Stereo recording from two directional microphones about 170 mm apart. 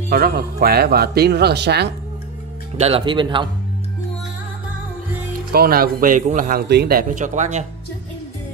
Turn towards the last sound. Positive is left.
turn(degrees=-45)  # may be behind; listen again after turning